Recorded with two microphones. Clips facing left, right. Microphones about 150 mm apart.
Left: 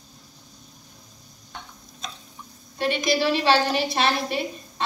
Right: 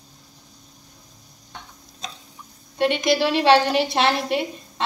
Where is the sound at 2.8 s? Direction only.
70° right (ahead or behind).